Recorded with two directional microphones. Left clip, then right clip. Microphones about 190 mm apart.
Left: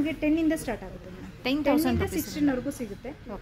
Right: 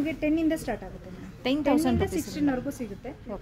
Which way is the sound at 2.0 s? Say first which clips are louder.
Even; 35° left (ahead or behind).